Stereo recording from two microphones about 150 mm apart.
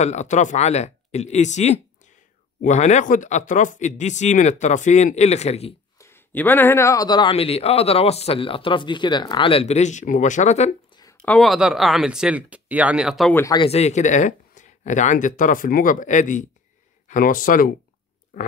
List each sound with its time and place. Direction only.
0.0 s speech: 50° left (ahead or behind)
5.9 s a man's voice: 15° left (ahead or behind); by 10.7 s 50° left (ahead or behind)
10.9 s a sound: 25° left (ahead or behind)
11.2 s speech: centre (ahead or behind)
13.3 s speech: 20° left (ahead or behind)
13.6 s speech: 45° left (ahead or behind); by 17.7 s 65° left (ahead or behind)